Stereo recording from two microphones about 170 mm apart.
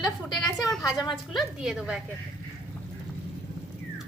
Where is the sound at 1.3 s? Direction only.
5° right (ahead or behind).